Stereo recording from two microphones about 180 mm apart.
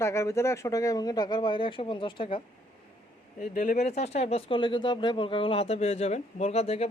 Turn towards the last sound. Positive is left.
turn(degrees=35)  # may be behind; listen again after turning